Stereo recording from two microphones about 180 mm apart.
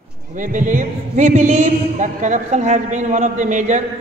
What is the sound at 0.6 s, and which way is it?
A woman's voice, 45° right (ahead or behind).